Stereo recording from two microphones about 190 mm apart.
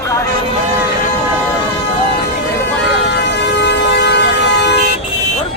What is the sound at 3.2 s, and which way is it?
Vehicle, 65° left (ahead or behind).